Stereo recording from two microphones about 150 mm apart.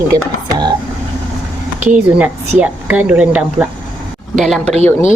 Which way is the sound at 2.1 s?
10° right (ahead or behind).